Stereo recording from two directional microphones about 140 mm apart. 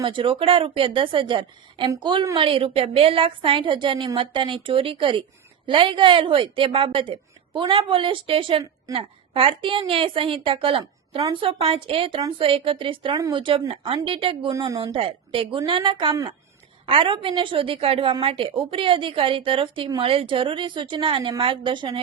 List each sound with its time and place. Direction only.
0.0 s a woman's voice: 35° right (ahead or behind)
14.5 s speech: 25° right (ahead or behind)
14.9 s a woman's voice: 40° right (ahead or behind)